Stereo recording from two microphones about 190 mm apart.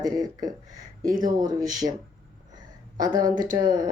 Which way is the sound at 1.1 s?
45° right (ahead or behind).